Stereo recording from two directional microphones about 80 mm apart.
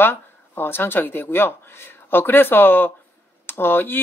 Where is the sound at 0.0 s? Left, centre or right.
Left.